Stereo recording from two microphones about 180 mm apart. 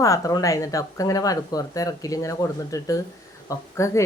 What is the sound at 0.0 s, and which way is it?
A woman's voice, 20° left (ahead or behind).